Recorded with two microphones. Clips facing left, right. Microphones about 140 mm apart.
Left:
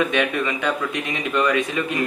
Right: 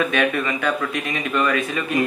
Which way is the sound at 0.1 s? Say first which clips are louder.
Right 1 dB; 20° left (ahead or behind).